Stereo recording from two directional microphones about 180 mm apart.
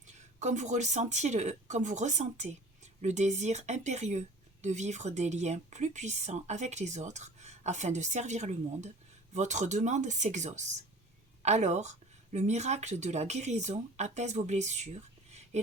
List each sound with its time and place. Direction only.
0.0 s a woman's voice: 40° right (ahead or behind)